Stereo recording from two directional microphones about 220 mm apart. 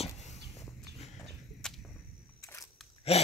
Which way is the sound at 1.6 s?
5° left (ahead or behind).